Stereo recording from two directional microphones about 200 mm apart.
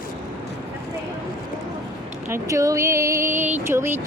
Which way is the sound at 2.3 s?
15° right (ahead or behind).